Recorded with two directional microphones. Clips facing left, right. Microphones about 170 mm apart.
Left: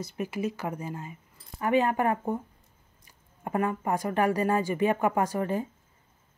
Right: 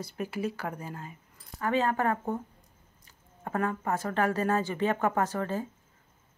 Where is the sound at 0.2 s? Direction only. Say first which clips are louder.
Left 2 dB; 10° left (ahead or behind).